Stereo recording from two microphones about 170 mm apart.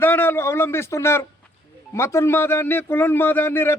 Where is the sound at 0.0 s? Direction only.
10° left (ahead or behind).